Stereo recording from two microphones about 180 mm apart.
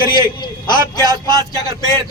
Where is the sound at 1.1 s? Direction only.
20° right (ahead or behind).